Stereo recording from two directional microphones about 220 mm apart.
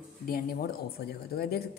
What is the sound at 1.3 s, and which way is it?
Speech, 45° left (ahead or behind).